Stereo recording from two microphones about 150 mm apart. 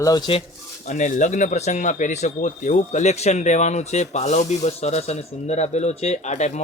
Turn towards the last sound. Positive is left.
turn(degrees=50)  # may be behind; listen again after turning